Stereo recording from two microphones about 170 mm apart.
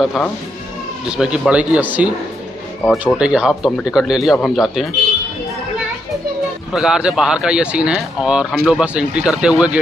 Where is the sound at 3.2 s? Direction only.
5° right (ahead or behind).